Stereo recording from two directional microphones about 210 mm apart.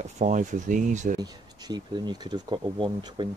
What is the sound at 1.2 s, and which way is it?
Speech, 20° right (ahead or behind).